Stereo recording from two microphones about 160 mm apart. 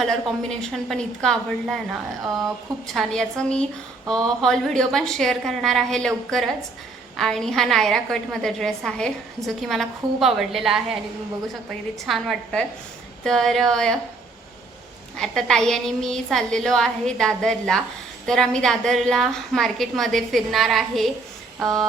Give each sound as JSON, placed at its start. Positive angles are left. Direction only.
{"t": 0.0, "sound": "a woman's voice", "side_deg": 0}
{"t": 12.0, "sound": "a woman's voice", "side_deg": 0}
{"t": 15.1, "sound": "a woman's voice", "side_deg": 5}